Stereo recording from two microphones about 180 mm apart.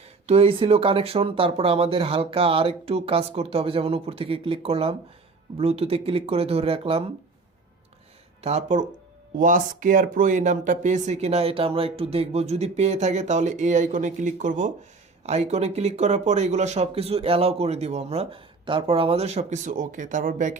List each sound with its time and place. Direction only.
0.0 s speech: 35° right (ahead or behind)
8.4 s speech: 35° right (ahead or behind)